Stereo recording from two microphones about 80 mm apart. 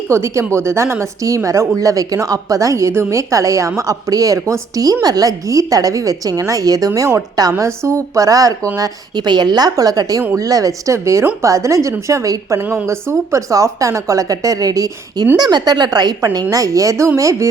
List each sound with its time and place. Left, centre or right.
0.1 s a woman's voice: right
8.8 s a woman's voice: right
12.5 s a woman's voice: right